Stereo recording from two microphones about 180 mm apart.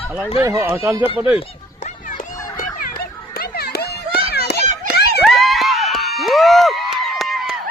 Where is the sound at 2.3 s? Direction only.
20° left (ahead or behind).